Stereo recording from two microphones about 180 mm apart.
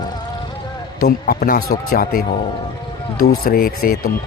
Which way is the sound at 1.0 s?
55° left (ahead or behind).